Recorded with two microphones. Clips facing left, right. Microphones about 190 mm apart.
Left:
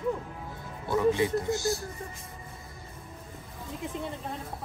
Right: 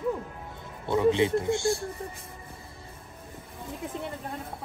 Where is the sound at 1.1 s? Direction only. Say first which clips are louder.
Right 3 dB; 25° right (ahead or behind).